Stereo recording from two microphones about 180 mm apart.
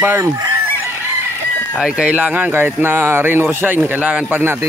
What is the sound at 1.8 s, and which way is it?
Speech, 5° right (ahead or behind).